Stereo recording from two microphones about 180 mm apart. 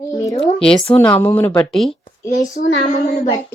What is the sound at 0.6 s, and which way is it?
Speech, 5° left (ahead or behind).